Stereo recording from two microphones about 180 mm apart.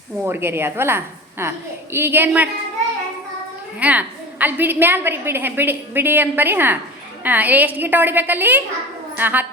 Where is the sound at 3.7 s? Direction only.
10° right (ahead or behind).